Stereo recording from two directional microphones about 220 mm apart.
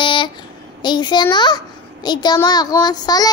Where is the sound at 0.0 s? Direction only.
20° left (ahead or behind).